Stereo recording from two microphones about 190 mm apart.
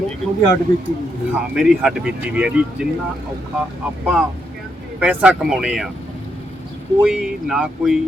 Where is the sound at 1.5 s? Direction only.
5° right (ahead or behind).